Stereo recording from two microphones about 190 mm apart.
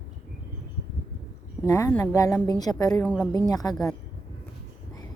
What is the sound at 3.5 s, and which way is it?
Speech, 20° left (ahead or behind).